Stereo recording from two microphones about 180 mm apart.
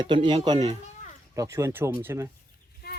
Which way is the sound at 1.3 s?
15° right (ahead or behind).